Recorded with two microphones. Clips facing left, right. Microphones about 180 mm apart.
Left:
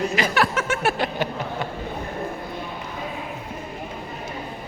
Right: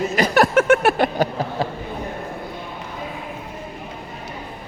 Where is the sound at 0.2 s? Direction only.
45° right (ahead or behind).